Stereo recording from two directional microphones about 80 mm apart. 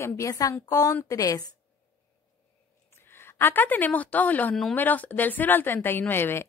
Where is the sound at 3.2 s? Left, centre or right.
Left.